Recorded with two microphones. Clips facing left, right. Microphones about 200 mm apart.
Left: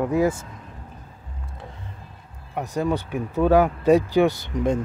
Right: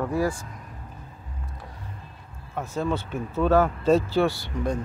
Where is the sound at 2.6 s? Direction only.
15° left (ahead or behind).